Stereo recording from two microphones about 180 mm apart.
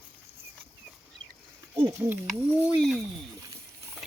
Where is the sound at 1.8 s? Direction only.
10° right (ahead or behind).